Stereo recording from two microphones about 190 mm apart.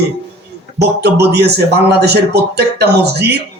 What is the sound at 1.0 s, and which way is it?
A man's voice, 60° right (ahead or behind).